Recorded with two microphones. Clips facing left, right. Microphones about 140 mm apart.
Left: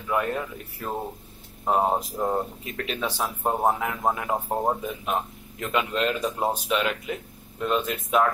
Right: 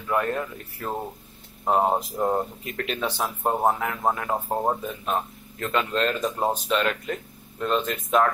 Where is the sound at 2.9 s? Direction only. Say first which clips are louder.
Right 1 dB; 10° left (ahead or behind).